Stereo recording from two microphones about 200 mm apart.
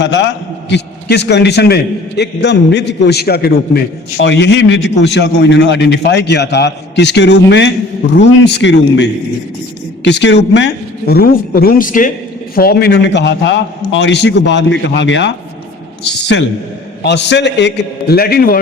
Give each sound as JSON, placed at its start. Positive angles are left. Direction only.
{"t": 0.0, "sound": "a man's voice", "side_deg": 65}
{"t": 4.2, "sound": "a man's voice", "side_deg": 60}
{"t": 17.0, "sound": "a man's voice", "side_deg": 60}